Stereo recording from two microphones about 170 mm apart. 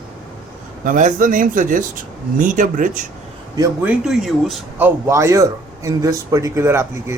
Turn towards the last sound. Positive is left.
turn(degrees=-15)  # may be behind; listen again after turning